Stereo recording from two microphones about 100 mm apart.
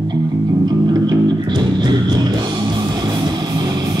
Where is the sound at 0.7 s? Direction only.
45° right (ahead or behind).